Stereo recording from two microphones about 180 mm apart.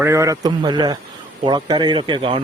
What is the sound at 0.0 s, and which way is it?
Speech, 15° right (ahead or behind).